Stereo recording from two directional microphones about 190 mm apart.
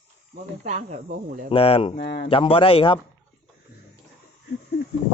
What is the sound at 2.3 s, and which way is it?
Speech, 25° left (ahead or behind).